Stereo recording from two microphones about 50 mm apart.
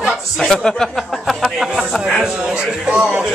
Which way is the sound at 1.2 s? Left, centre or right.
Centre.